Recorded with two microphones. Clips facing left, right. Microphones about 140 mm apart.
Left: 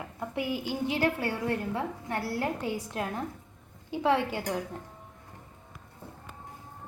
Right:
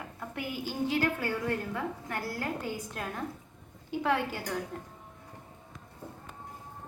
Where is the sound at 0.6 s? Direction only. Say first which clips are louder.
Right 1 dB; 25° left (ahead or behind).